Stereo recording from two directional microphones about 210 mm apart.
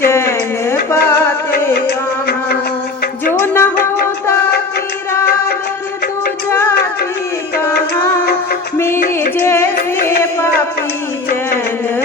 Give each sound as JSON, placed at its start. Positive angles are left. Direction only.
{"t": 0.1, "sound": "a sound", "side_deg": 10}
{"t": 3.4, "sound": "music", "side_deg": 10}
{"t": 3.8, "sound": "music", "side_deg": 50}
{"t": 5.2, "sound": "music", "side_deg": 45}
{"t": 6.5, "sound": "music", "side_deg": 15}
{"t": 9.4, "sound": "carnatic music", "side_deg": 10}